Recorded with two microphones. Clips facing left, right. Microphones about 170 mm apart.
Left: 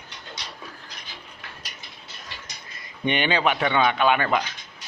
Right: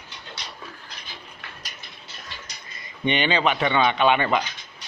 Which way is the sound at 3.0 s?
10° left (ahead or behind).